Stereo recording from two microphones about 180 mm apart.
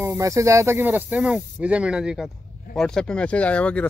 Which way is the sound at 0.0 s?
15° right (ahead or behind).